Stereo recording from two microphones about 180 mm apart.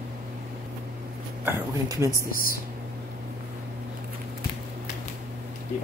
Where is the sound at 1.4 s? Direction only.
15° right (ahead or behind).